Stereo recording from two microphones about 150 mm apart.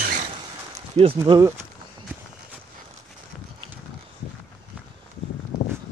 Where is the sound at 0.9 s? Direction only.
40° right (ahead or behind).